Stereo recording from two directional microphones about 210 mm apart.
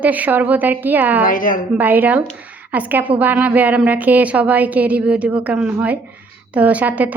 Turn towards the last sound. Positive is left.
turn(degrees=-5)  # may be behind; listen again after turning